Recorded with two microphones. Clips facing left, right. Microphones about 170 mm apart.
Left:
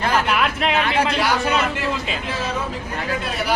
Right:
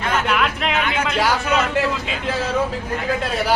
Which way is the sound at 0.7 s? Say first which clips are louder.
Left 2 dB; 35° left (ahead or behind).